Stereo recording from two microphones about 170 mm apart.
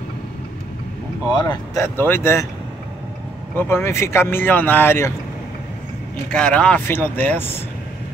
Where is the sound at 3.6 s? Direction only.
15° left (ahead or behind).